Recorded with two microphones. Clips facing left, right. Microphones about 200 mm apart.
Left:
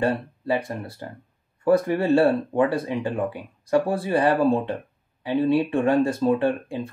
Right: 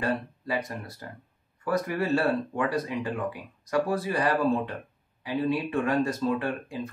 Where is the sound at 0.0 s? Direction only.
30° left (ahead or behind).